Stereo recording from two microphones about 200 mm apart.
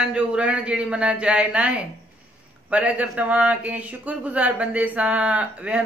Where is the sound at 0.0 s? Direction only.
5° right (ahead or behind).